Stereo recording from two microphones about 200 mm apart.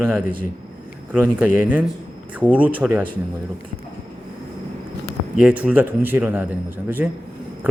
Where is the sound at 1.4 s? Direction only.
10° right (ahead or behind).